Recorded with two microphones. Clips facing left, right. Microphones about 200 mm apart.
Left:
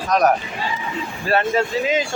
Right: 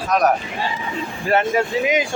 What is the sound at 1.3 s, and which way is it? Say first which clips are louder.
Speech: right 1 dB; 15° right (ahead or behind).